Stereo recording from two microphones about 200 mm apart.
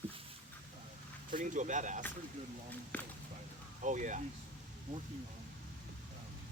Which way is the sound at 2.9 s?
10° left (ahead or behind).